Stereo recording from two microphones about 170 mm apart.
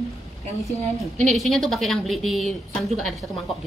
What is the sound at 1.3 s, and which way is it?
A woman's voice, centre (ahead or behind).